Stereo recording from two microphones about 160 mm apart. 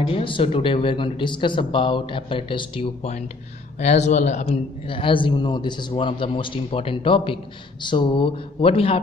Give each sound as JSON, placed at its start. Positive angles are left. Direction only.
{"t": 0.0, "sound": "speech", "side_deg": 35}